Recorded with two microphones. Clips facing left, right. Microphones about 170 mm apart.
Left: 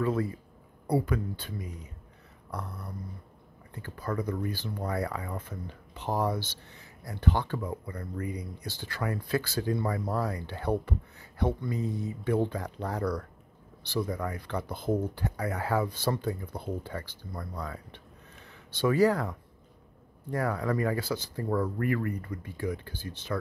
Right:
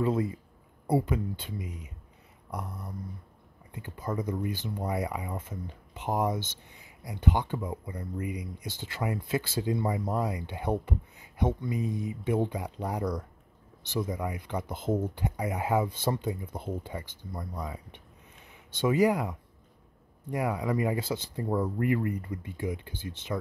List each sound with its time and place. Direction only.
0.0 s speech: 20° right (ahead or behind)